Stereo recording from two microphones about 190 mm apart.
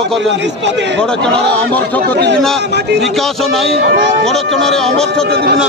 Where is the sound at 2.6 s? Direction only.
60° right (ahead or behind).